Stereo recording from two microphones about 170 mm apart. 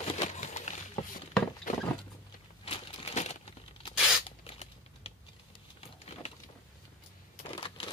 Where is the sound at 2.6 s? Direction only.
40° left (ahead or behind).